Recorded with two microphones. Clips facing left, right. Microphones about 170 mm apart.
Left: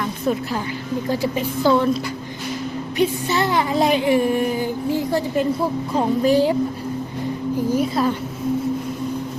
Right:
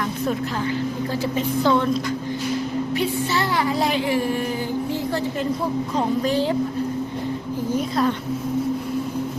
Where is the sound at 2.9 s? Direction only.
20° left (ahead or behind).